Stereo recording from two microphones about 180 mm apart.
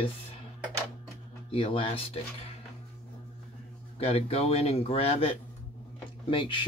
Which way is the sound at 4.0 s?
35° left (ahead or behind).